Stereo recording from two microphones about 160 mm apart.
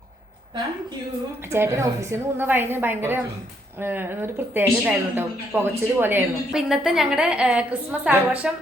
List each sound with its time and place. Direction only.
1.5 s a woman's voice: 15° right (ahead or behind)